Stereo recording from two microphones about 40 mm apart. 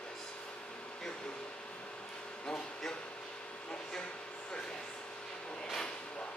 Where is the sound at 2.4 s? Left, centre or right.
Centre.